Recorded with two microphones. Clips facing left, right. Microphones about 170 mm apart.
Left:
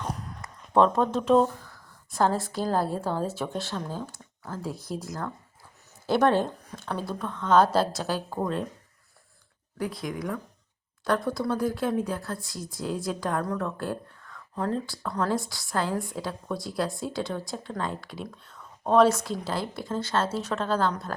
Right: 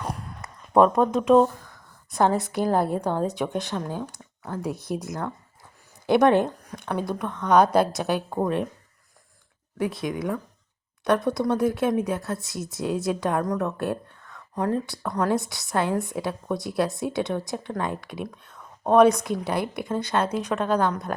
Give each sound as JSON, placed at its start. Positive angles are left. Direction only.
{"t": 0.0, "sound": "a sound", "side_deg": -10}
{"t": 0.4, "sound": "a woman's voice", "side_deg": -15}
{"t": 9.7, "sound": "a woman's voice", "side_deg": -25}